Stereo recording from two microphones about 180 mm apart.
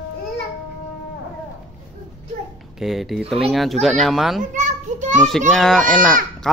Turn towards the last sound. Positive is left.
turn(degrees=0)  # may be behind; listen again after turning